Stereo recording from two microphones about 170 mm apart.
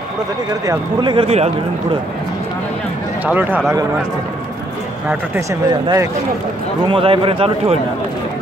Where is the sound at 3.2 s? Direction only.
10° right (ahead or behind).